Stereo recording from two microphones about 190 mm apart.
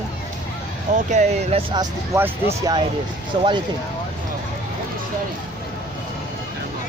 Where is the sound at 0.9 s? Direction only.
40° right (ahead or behind).